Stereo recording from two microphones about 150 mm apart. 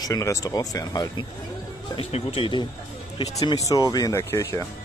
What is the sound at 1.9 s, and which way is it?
Speech, 35° left (ahead or behind).